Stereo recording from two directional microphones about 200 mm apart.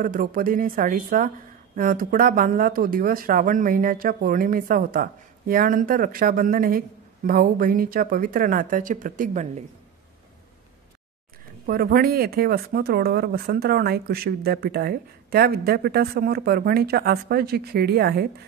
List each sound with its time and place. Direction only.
0.0 s speech: 45° right (ahead or behind)
11.6 s speech: 50° right (ahead or behind)